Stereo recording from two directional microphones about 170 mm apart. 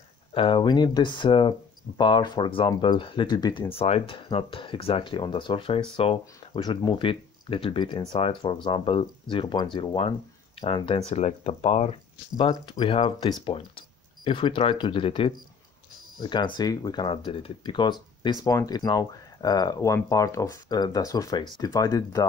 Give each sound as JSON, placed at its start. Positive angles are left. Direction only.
{"t": 0.3, "sound": "speech", "side_deg": 30}
{"t": 3.7, "sound": "speech", "side_deg": 35}
{"t": 12.4, "sound": "speech", "side_deg": 25}